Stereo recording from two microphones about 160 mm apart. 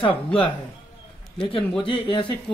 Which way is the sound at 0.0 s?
35° left (ahead or behind).